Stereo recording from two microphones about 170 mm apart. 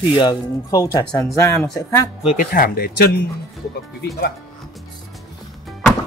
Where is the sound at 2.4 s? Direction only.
60° left (ahead or behind).